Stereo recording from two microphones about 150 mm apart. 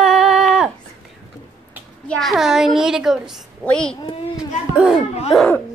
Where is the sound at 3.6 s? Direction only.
5° left (ahead or behind).